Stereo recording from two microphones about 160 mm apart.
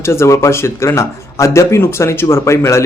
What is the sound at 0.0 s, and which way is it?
A man's voice, 15° left (ahead or behind).